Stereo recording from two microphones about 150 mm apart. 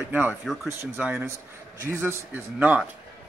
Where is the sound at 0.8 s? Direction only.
15° right (ahead or behind).